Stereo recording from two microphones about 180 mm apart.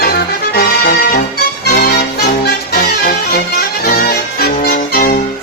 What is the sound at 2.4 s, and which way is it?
Music, 55° left (ahead or behind).